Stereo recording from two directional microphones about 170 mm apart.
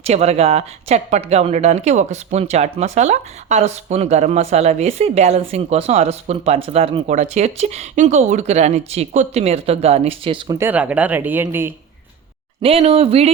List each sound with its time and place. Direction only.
0.0 s speech: 40° right (ahead or behind)
10.6 s speech: 10° right (ahead or behind)
12.6 s speech: 40° right (ahead or behind)